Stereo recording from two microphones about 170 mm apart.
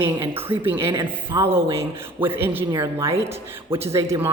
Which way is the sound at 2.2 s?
10° right (ahead or behind).